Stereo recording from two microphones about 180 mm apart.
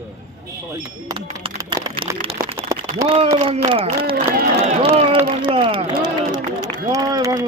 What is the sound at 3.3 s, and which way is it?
Speech, 35° right (ahead or behind).